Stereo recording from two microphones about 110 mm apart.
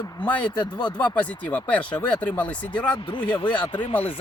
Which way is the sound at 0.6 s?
45° left (ahead or behind).